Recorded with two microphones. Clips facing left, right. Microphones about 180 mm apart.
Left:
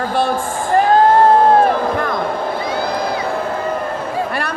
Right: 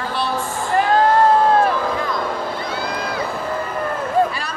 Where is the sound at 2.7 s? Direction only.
55° left (ahead or behind).